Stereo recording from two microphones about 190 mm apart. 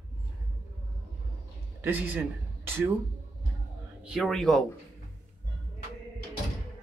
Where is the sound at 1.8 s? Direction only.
10° right (ahead or behind).